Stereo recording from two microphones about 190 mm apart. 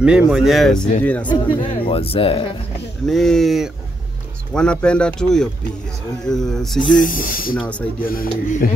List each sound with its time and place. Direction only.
0.0 s speech: 5° right (ahead or behind)
1.2 s speech: 25° left (ahead or behind)
3.1 s speech: centre (ahead or behind)
6.9 s speech: 45° left (ahead or behind)
7.5 s speech: 5° left (ahead or behind)
8.1 s speech: 45° left (ahead or behind)